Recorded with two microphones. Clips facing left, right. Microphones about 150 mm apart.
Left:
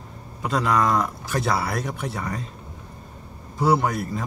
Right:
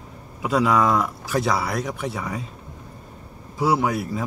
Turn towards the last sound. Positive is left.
turn(degrees=-5)  # may be behind; listen again after turning